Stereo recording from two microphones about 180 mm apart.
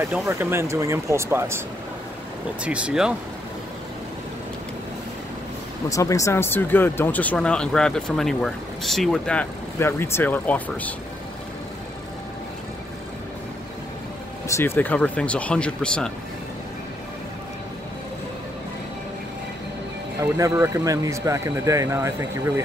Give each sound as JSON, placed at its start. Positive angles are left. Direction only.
{"t": 0.1, "sound": "speech", "side_deg": -10}
{"t": 2.6, "sound": "speech", "side_deg": -5}
{"t": 5.9, "sound": "speech", "side_deg": 20}
{"t": 14.5, "sound": "speech", "side_deg": 15}
{"t": 20.3, "sound": "speech", "side_deg": -15}